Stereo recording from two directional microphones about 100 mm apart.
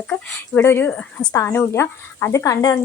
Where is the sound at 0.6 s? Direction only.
25° left (ahead or behind).